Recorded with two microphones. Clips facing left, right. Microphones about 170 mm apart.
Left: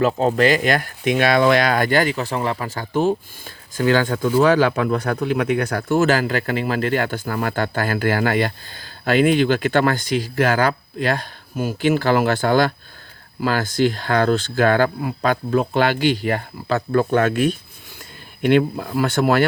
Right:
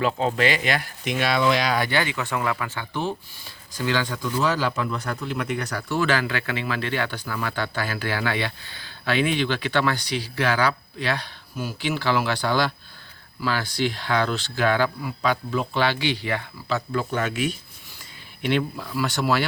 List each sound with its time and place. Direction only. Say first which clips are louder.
0.0 s speech: left 6 dB; 45° left (ahead or behind)